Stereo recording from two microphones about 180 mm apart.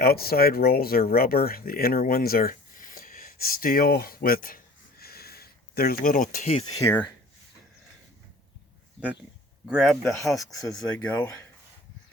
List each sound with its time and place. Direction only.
0.0 s speech: 60° left (ahead or behind)
6.7 s speech: 15° left (ahead or behind)
9.6 s speech: centre (ahead or behind)
10.3 s speech: 20° left (ahead or behind)
10.8 s speech: 10° left (ahead or behind)